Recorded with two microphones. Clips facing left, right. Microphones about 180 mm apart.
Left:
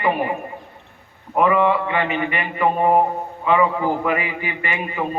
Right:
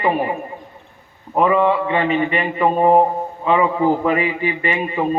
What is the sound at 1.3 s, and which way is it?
A man's voice, 25° right (ahead or behind).